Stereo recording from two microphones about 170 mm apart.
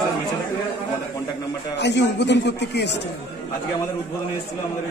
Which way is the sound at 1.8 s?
90° left.